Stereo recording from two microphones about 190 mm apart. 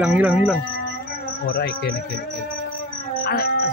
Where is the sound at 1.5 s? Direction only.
55° left (ahead or behind).